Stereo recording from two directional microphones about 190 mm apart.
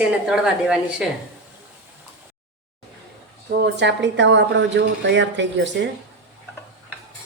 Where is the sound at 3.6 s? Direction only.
65° right (ahead or behind).